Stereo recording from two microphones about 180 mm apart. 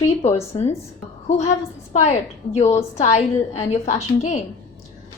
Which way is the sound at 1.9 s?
40° left (ahead or behind).